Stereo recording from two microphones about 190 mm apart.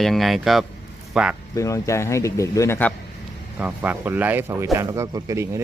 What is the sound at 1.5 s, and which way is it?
A man's voice, 15° left (ahead or behind).